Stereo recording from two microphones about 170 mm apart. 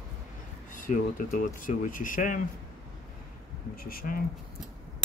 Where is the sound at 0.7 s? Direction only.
50° left (ahead or behind).